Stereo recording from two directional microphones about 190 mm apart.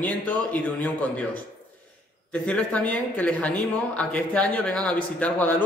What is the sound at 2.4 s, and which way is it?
Speech, 5° left (ahead or behind).